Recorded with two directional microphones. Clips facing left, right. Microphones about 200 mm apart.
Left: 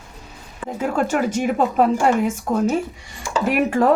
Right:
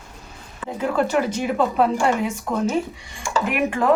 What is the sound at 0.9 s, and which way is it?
Speech, 50° left (ahead or behind).